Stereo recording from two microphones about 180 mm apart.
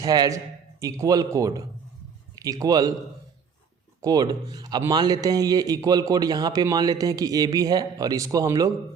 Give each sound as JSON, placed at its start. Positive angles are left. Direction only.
{"t": 0.0, "sound": "a man's voice", "side_deg": -20}
{"t": 4.0, "sound": "speech", "side_deg": -20}